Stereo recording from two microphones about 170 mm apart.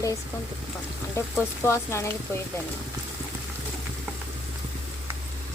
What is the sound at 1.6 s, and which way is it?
Speech, 15° left (ahead or behind).